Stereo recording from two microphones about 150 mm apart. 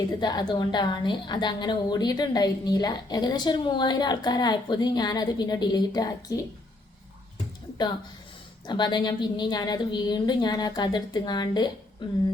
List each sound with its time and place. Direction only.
0.2 s a woman's voice: 30° left (ahead or behind)
8.6 s a woman's voice: 30° left (ahead or behind)